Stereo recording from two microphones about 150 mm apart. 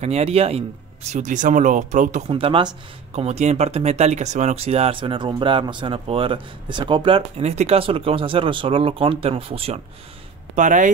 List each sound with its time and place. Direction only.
0.0 s speech: 45° right (ahead or behind)
2.3 s speech: 35° right (ahead or behind)
10.5 s speech: 55° right (ahead or behind)